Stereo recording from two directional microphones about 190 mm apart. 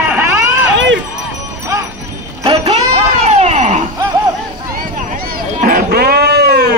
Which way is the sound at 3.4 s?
35° right (ahead or behind).